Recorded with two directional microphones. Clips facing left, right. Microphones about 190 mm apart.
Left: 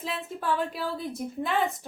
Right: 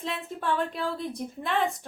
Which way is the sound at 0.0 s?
Centre (ahead or behind).